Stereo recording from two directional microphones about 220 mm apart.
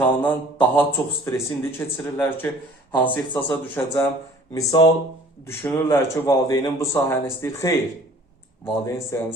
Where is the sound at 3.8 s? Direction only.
10° left (ahead or behind).